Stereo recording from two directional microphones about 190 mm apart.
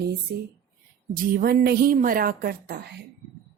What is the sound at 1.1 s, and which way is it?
Speech, 50° right (ahead or behind).